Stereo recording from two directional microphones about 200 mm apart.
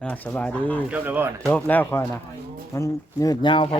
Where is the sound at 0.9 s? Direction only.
10° right (ahead or behind).